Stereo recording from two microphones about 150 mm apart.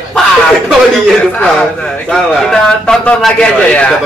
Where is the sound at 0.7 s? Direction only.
Centre (ahead or behind).